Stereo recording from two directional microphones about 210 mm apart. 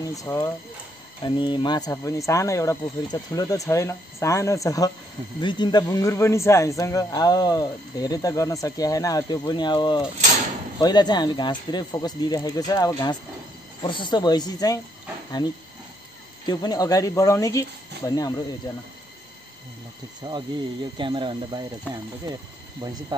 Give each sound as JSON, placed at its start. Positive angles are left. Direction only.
{"t": 0.0, "sound": "a man's voice", "side_deg": 15}
{"t": 16.4, "sound": "a man's voice", "side_deg": 15}
{"t": 20.2, "sound": "speech", "side_deg": -15}